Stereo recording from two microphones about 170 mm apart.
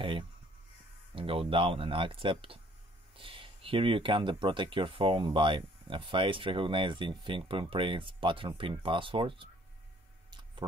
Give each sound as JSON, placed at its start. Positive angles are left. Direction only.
{"t": 1.1, "sound": "speech", "side_deg": -30}